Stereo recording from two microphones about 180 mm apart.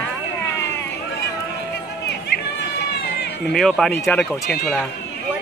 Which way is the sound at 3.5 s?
Centre (ahead or behind).